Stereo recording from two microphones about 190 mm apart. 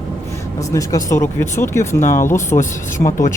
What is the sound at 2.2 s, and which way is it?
Speech, 15° left (ahead or behind).